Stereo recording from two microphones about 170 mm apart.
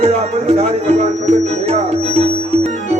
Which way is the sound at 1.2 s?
40° right (ahead or behind).